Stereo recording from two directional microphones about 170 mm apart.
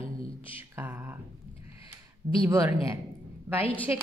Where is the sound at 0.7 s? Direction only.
15° right (ahead or behind).